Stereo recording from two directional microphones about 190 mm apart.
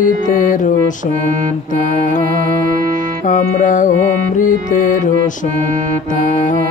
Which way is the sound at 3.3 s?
40° left (ahead or behind).